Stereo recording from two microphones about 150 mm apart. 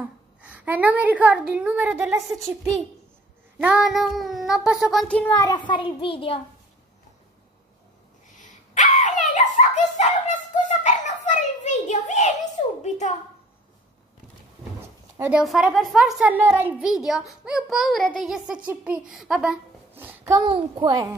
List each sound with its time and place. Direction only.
0.4 s a woman's voice: 10° right (ahead or behind)
2.1 s a woman's voice: centre (ahead or behind)
5.0 s a child's voice: 10° left (ahead or behind)
5.3 s a child's voice: 25° left (ahead or behind)
8.4 s dog: 55° left (ahead or behind)
10.7 s a sound: 55° left (ahead or behind)
12.8 s a woman's voice: 50° left (ahead or behind)
15.1 s a woman's voice: 10° right (ahead or behind)
15.4 s a woman's voice: centre (ahead or behind)
19.9 s a sound: 15° right (ahead or behind)
20.4 s a child's voice: 30° right (ahead or behind)